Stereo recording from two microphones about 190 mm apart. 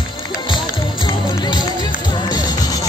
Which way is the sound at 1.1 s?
25° left (ahead or behind).